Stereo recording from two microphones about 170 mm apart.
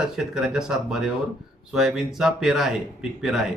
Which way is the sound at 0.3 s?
5° right (ahead or behind).